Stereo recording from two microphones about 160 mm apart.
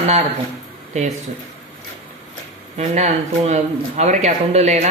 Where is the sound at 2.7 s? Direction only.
45° right (ahead or behind).